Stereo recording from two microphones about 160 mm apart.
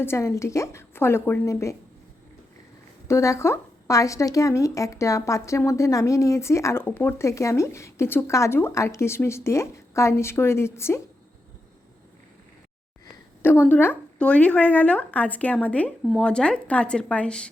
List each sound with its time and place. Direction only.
0.0 s speech: 15° left (ahead or behind)
3.1 s speech: 20° left (ahead or behind)
13.4 s speech: 10° left (ahead or behind)